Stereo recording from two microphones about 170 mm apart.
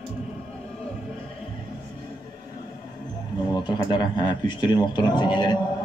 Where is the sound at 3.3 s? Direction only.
25° left (ahead or behind).